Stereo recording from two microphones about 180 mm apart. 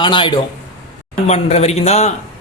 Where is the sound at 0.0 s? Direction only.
25° left (ahead or behind).